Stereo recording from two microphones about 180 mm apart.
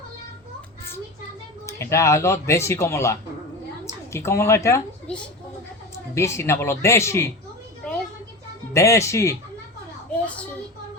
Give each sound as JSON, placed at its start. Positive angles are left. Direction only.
{"t": 1.6, "sound": "speech", "side_deg": 15}
{"t": 5.1, "sound": "speech", "side_deg": 5}
{"t": 6.1, "sound": "speech", "side_deg": 15}
{"t": 8.7, "sound": "speech", "side_deg": 15}
{"t": 10.1, "sound": "a sound", "side_deg": 5}